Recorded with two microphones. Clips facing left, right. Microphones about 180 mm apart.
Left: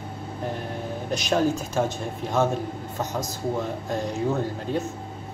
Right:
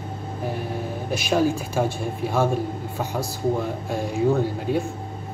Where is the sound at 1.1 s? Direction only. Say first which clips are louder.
Right 2 dB; 5° right (ahead or behind).